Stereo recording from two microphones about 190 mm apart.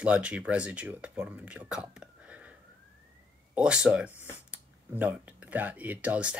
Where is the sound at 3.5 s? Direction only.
5° right (ahead or behind).